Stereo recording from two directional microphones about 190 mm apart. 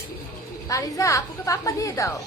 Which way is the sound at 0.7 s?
15° left (ahead or behind).